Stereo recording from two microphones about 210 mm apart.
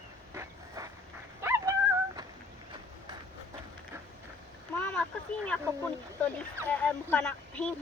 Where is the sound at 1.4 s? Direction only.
10° right (ahead or behind).